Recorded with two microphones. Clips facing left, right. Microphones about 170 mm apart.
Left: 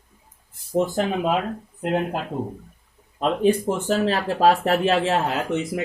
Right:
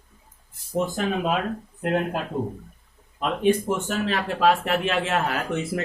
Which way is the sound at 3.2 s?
35° left (ahead or behind).